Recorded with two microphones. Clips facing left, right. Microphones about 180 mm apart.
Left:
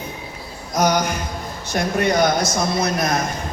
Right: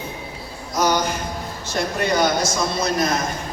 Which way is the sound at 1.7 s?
65° left (ahead or behind).